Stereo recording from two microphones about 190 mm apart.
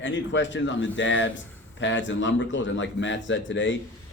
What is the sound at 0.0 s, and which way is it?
A man's voice, 70° left (ahead or behind).